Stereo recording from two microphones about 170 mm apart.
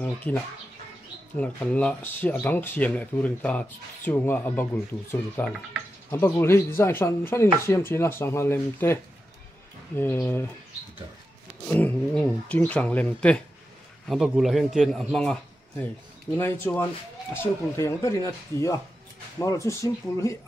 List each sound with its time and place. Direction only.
0.0 s speech: 10° left (ahead or behind)
11.6 s a man's voice: 10° left (ahead or behind)
16.3 s speech: 10° left (ahead or behind)